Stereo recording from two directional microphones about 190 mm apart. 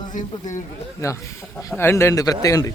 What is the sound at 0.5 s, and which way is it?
Speech, 15° left (ahead or behind).